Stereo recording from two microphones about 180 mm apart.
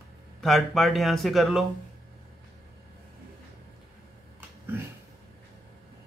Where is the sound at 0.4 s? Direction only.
Centre (ahead or behind).